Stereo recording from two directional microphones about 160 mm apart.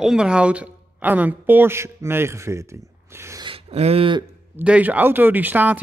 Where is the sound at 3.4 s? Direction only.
35° right (ahead or behind).